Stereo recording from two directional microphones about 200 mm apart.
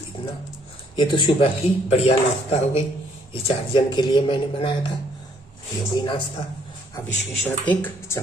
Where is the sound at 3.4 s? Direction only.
25° left (ahead or behind).